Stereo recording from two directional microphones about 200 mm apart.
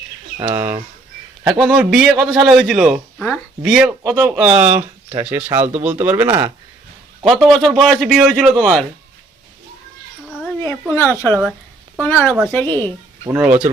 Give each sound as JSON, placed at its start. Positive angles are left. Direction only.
{"t": 0.5, "sound": "a man's voice", "side_deg": -10}
{"t": 4.0, "sound": "speech", "side_deg": -20}
{"t": 4.4, "sound": "speech", "side_deg": -5}
{"t": 7.3, "sound": "a man's voice", "side_deg": 0}
{"t": 10.6, "sound": "a woman's voice", "side_deg": 10}
{"t": 13.3, "sound": "speech", "side_deg": -5}